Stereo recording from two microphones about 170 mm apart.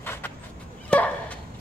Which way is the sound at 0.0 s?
15° left (ahead or behind).